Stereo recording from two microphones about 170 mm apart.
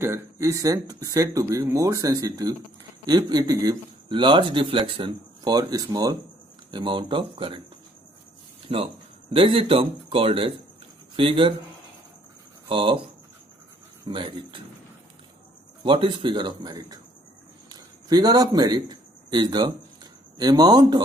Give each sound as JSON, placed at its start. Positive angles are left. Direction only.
{"t": 0.0, "sound": "speech", "side_deg": -15}
{"t": 8.6, "sound": "speech", "side_deg": -35}
{"t": 12.6, "sound": "speech", "side_deg": -30}
{"t": 14.0, "sound": "speech", "side_deg": -30}
{"t": 15.8, "sound": "speech", "side_deg": -30}
{"t": 17.6, "sound": "a sound", "side_deg": -25}
{"t": 20.3, "sound": "speech", "side_deg": -20}